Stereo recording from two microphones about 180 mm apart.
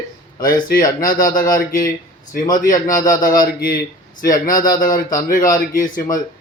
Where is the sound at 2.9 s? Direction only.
50° left (ahead or behind).